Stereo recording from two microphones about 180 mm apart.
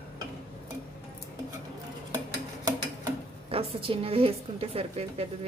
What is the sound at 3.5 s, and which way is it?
A woman's voice, 30° right (ahead or behind).